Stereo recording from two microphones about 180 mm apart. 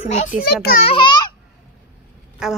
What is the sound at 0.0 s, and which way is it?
Speech, 45° left (ahead or behind).